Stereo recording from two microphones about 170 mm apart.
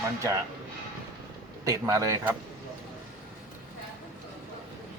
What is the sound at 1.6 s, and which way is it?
Speech, 20° right (ahead or behind).